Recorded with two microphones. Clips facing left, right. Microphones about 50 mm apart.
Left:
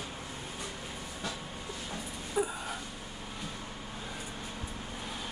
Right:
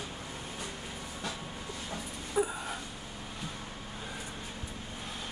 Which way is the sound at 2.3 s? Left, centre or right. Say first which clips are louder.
Right 1 dB; centre.